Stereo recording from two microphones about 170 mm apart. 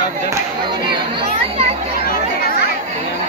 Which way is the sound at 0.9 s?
30° right (ahead or behind).